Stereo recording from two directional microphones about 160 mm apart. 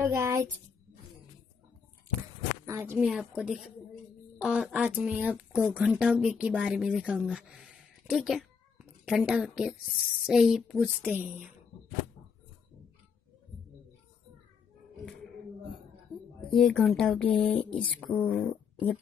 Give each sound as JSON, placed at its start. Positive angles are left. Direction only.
{"t": 0.0, "sound": "speech", "side_deg": -15}
{"t": 2.6, "sound": "a woman's voice", "side_deg": -15}
{"t": 3.0, "sound": "a woman's voice", "side_deg": -5}
{"t": 16.5, "sound": "a woman's voice", "side_deg": 0}